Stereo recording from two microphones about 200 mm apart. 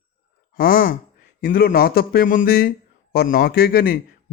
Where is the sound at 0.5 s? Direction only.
45° left (ahead or behind).